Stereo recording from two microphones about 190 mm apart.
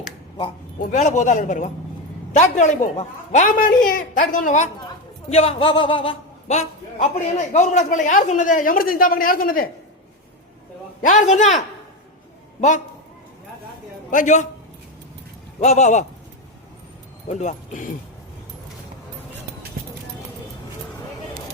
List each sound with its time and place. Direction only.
0.8 s a man's voice: 40° left (ahead or behind)
5.3 s a man's voice: 30° left (ahead or behind); by 9.6 s 50° left (ahead or behind)
11.0 s a man's voice: 40° left (ahead or behind)
14.1 s a man's voice: 40° left (ahead or behind)
15.6 s a man's voice: 35° left (ahead or behind)
17.2 s a man's voice: 40° left (ahead or behind)